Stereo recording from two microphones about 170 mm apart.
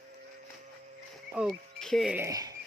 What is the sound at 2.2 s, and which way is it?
Speech, 20° right (ahead or behind).